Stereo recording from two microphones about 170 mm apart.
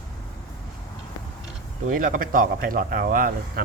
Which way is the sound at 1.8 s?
50° right (ahead or behind).